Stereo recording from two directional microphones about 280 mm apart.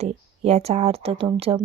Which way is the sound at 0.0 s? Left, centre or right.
Right.